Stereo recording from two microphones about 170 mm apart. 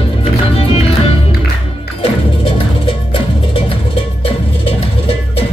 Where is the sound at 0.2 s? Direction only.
35° left (ahead or behind).